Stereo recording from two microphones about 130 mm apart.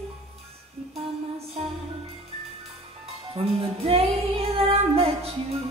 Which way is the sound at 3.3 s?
45° right (ahead or behind).